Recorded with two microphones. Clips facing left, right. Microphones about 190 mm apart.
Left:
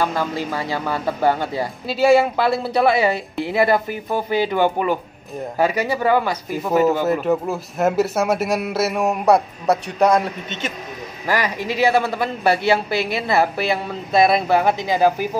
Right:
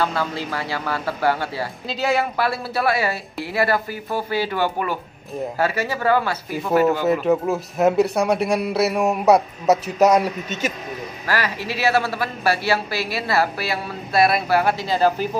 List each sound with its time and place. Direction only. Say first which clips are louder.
0.0 s a man's voice: left 2 dB; 15° left (ahead or behind)
7.1 s a man's voice: right 1 dB; centre (ahead or behind)
11.2 s a man's voice: left 3 dB; 15° left (ahead or behind)